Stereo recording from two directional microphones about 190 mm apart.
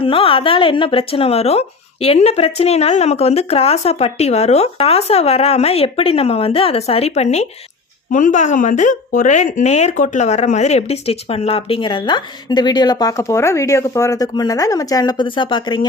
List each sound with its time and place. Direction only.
0.0 s a woman's voice: 30° left (ahead or behind)